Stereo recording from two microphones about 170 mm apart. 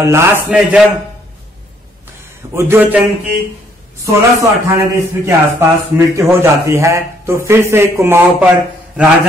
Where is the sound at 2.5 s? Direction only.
15° right (ahead or behind).